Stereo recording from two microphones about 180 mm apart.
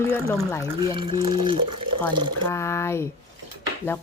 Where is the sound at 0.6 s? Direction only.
30° right (ahead or behind).